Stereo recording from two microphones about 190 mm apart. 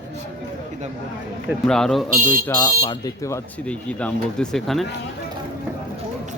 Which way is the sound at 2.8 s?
20° left (ahead or behind).